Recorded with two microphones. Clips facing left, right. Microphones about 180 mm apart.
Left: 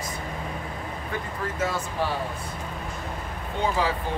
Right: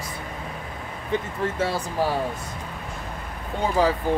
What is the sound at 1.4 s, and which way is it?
Speech, 30° right (ahead or behind).